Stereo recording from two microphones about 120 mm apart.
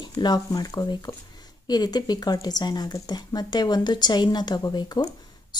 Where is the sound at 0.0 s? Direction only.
35° left (ahead or behind).